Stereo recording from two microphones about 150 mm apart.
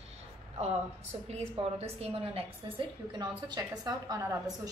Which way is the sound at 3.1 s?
30° right (ahead or behind).